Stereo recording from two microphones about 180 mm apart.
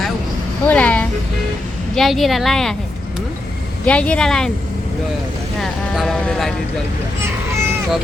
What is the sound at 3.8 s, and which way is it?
Speech, 5° left (ahead or behind).